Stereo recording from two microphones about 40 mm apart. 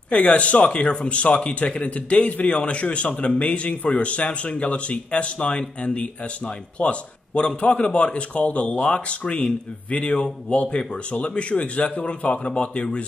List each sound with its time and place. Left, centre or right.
0.1 s a man's voice: left